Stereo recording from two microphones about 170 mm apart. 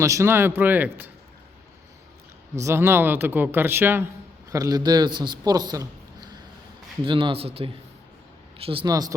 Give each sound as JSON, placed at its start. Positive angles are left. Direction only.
{"t": 0.0, "sound": "speech", "side_deg": -15}
{"t": 2.6, "sound": "a man's voice", "side_deg": -15}